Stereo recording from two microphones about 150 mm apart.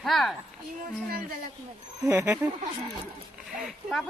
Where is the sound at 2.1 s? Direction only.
20° right (ahead or behind).